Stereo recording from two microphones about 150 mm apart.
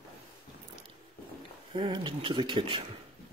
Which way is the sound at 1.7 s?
30° right (ahead or behind).